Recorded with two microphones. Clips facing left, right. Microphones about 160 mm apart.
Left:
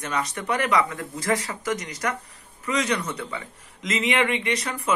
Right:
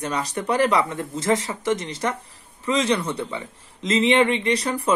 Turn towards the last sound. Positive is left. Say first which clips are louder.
# right 4 dB
turn(degrees=-30)  # may be behind; listen again after turning